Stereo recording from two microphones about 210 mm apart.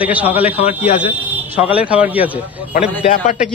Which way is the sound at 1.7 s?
5° right (ahead or behind).